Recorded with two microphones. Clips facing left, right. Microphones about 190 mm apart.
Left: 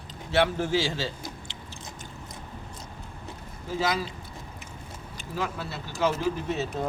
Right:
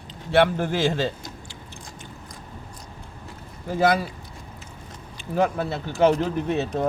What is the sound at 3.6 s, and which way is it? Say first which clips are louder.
Speech: right 7 dB; 55° right (ahead or behind).